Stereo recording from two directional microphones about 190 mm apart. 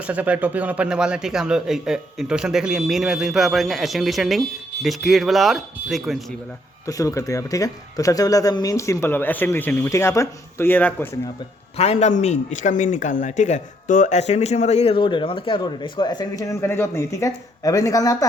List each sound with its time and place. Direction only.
0.0 s speech: 5° right (ahead or behind)
6.8 s speech: 15° left (ahead or behind)
11.8 s speech: 35° left (ahead or behind); by 18.3 s 20° left (ahead or behind)